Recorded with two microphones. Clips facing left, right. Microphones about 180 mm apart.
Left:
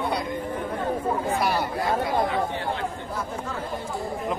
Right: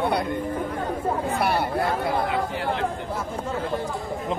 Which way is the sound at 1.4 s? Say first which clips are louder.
Right 2 dB; 60° right (ahead or behind).